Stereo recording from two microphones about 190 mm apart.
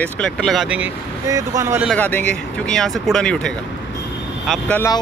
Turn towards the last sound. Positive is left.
turn(degrees=10)  # may be behind; listen again after turning